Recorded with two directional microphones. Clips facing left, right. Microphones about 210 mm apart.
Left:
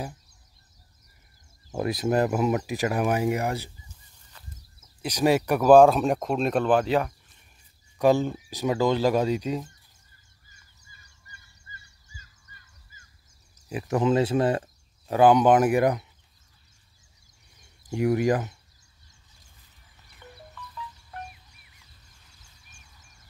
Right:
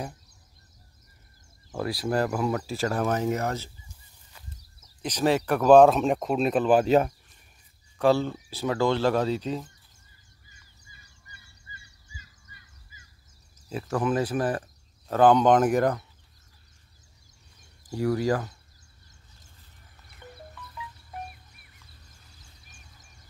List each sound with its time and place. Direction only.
1.7 s speech: 20° left (ahead or behind)
5.0 s speech: 10° left (ahead or behind); by 6.9 s 5° right (ahead or behind)
8.0 s speech: 15° left (ahead or behind)
12.2 s fowl: 45° left (ahead or behind)
13.7 s speech: 15° left (ahead or behind)
15.0 s speech: 10° left (ahead or behind)
17.8 s speech: 20° left (ahead or behind)